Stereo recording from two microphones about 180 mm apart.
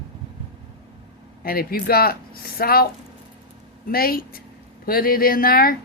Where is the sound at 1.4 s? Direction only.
55° left (ahead or behind).